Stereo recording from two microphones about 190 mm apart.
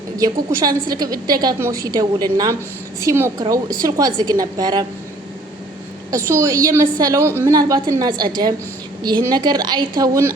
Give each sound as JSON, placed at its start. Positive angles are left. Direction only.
{"t": 0.2, "sound": "a woman's voice", "side_deg": -20}
{"t": 6.1, "sound": "a woman's voice", "side_deg": -15}